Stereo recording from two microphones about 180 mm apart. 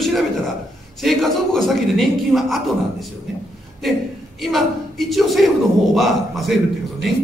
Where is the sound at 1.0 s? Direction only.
Centre (ahead or behind).